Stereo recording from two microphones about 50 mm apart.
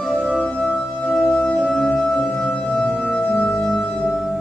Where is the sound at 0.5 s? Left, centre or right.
Centre.